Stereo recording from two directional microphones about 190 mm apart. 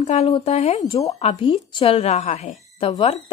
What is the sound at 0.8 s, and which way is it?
Speech, 15° left (ahead or behind).